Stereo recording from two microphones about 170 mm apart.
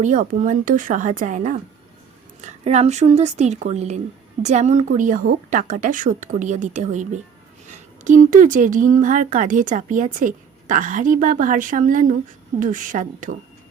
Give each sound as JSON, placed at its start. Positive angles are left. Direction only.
{"t": 0.0, "sound": "speech", "side_deg": -45}